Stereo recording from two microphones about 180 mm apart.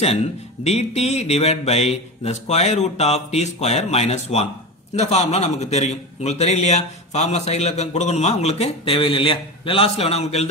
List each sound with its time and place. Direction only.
0.7 s a man's voice: 35° left (ahead or behind)